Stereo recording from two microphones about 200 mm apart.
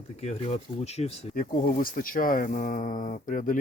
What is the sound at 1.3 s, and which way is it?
Speech, 45° left (ahead or behind).